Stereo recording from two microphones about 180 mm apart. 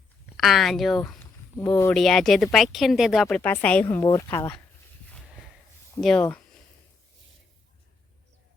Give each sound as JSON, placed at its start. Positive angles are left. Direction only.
{"t": 0.3, "sound": "speech", "side_deg": 0}
{"t": 1.2, "sound": "a sound", "side_deg": 15}
{"t": 1.9, "sound": "speech", "side_deg": 0}
{"t": 3.2, "sound": "a woman's voice", "side_deg": 10}
{"t": 3.8, "sound": "speech", "side_deg": 20}
{"t": 6.0, "sound": "speech", "side_deg": 0}